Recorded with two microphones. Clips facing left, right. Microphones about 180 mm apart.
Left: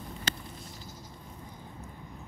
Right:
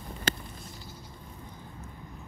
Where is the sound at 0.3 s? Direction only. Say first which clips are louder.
Right 5 dB; 55° right (ahead or behind).